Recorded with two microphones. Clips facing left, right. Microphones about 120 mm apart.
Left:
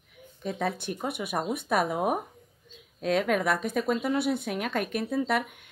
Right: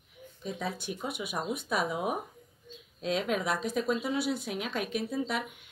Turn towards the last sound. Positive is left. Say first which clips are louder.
# left 5 dB
turn(degrees=55)  # may be behind; listen again after turning